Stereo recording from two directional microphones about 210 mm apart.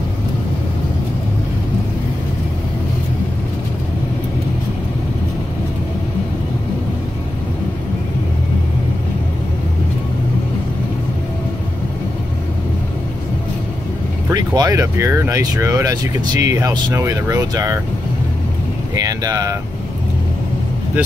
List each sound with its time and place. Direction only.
14.3 s speech: 20° right (ahead or behind)
18.9 s speech: 15° right (ahead or behind)